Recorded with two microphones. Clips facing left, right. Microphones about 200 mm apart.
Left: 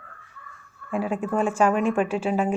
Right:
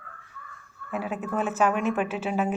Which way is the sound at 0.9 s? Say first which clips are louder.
Left 4 dB; 5° right (ahead or behind).